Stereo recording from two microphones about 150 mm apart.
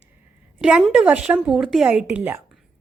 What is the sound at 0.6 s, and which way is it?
A woman's voice, 5° right (ahead or behind).